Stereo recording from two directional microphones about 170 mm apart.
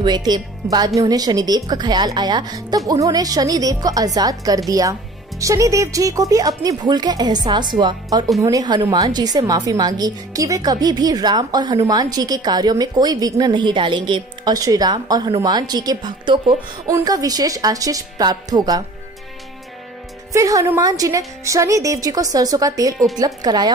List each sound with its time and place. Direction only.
0.0 s speech: 25° right (ahead or behind)
20.3 s speech: 20° right (ahead or behind)